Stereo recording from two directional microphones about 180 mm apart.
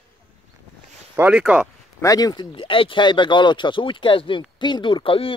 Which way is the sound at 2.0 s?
20° left (ahead or behind).